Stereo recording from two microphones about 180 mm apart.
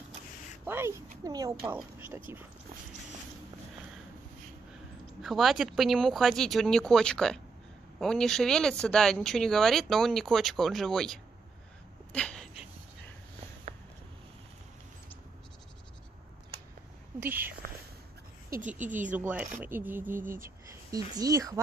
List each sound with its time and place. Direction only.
0.7 s speech: 15° right (ahead or behind)
1.6 s speech: 10° right (ahead or behind)
5.2 s speech: centre (ahead or behind)
12.1 s a sound: 5° left (ahead or behind)
17.2 s speech: 10° right (ahead or behind)
18.5 s speech: 45° right (ahead or behind)
19.1 s speech: 5° right (ahead or behind)
20.2 s speech: 50° right (ahead or behind)
20.4 s a woman's voice: 20° right (ahead or behind)